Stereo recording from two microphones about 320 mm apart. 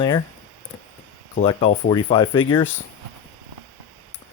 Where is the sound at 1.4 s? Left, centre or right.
Centre.